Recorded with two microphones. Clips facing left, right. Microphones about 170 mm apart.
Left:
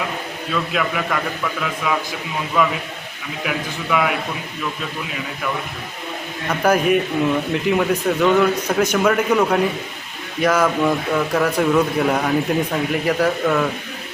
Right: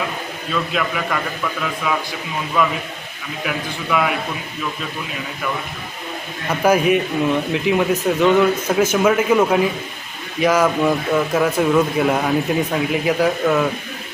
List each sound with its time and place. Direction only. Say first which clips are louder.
0.5 s speech: even; centre (ahead or behind)
3.4 s speech: even; centre (ahead or behind)
6.5 s a man's voice: right 1 dB; 5° right (ahead or behind)